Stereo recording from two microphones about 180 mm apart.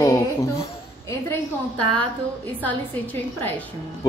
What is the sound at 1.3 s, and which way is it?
Speech, 5° left (ahead or behind).